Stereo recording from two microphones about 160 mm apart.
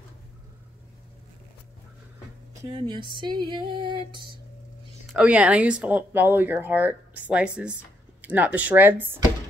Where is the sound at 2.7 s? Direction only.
30° right (ahead or behind).